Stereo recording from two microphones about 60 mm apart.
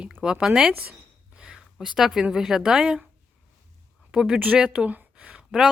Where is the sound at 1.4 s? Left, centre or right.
Centre.